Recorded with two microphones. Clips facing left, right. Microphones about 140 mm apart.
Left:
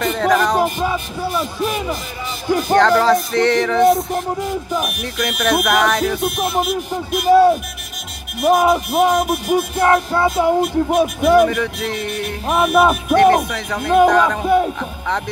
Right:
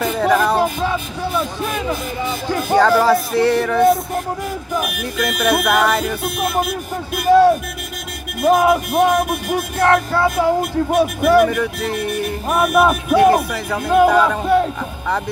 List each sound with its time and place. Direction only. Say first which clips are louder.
0.0 s music: even; 5° right (ahead or behind)
0.6 s music: even; 10° left (ahead or behind)
2.7 s music: even; 10° right (ahead or behind)
5.2 s speech: even; 5° right (ahead or behind)
7.2 s music: even; 15° left (ahead or behind)
8.6 s speech: even; centre (ahead or behind)
9.0 s music: even; 10° left (ahead or behind)
11.4 s speech: even; centre (ahead or behind)
13.1 s music: even; 5° right (ahead or behind)
14.4 s music: even; 10° left (ahead or behind)